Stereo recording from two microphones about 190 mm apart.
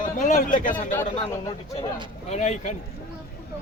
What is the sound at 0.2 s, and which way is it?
Speech, 45° left (ahead or behind).